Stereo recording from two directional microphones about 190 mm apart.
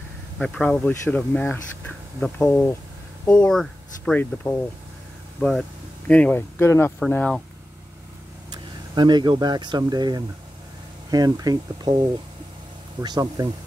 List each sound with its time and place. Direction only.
0.4 s speech: 5° left (ahead or behind)
8.5 s speech: 25° right (ahead or behind)
13.0 s speech: 20° right (ahead or behind)